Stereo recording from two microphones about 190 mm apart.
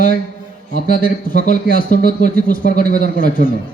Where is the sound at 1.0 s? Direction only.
45° left (ahead or behind).